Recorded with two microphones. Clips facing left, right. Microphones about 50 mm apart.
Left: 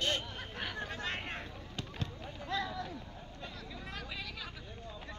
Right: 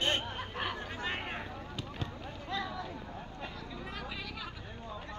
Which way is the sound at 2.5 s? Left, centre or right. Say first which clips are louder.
Left 1 dB; centre.